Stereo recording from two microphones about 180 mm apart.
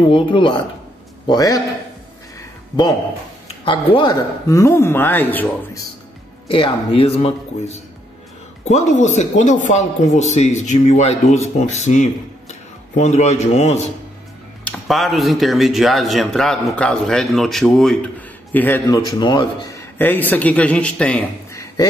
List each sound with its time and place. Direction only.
0.1 s a man's voice: 30° left (ahead or behind)
3.6 s a man's voice: 25° left (ahead or behind); by 5.9 s 10° left (ahead or behind)
6.5 s speech: 30° left (ahead or behind)
14.6 s a man's voice: 5° left (ahead or behind)
18.9 s a man's voice: 20° left (ahead or behind); by 21.3 s 5° left (ahead or behind)